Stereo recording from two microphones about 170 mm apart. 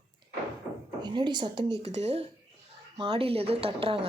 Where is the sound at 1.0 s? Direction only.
25° right (ahead or behind).